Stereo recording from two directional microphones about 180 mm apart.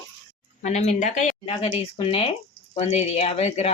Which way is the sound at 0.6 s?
40° left (ahead or behind).